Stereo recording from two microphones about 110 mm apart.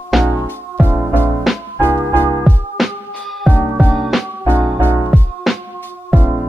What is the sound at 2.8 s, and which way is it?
Music, centre (ahead or behind).